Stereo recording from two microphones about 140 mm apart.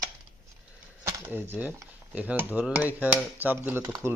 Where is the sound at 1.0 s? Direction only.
15° right (ahead or behind).